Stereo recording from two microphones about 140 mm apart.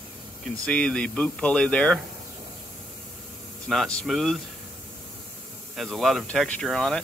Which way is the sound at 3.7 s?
5° left (ahead or behind).